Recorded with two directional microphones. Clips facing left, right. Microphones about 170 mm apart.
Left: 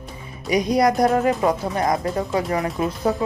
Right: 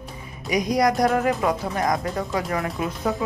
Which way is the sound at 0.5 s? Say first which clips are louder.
Left 3 dB; 30° left (ahead or behind).